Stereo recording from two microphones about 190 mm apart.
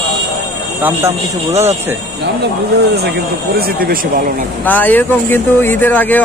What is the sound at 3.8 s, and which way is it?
Speech, 50° right (ahead or behind).